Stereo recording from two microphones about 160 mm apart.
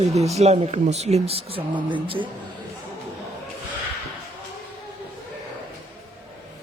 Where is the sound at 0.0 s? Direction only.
40° right (ahead or behind).